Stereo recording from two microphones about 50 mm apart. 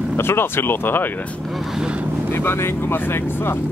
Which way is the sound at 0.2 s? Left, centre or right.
Left.